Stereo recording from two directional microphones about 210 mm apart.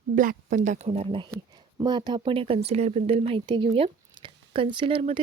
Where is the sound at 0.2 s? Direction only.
40° right (ahead or behind).